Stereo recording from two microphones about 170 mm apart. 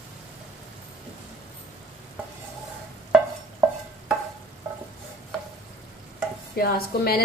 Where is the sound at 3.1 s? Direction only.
5° right (ahead or behind).